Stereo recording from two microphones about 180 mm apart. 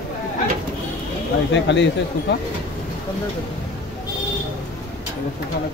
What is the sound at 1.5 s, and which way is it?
Speech, 80° left.